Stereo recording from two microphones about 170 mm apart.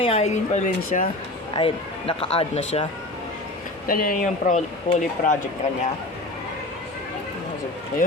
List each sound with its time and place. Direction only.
0.0 s speech: 35° left (ahead or behind)
1.5 s speech: 30° left (ahead or behind)
3.8 s speech: 55° left (ahead or behind)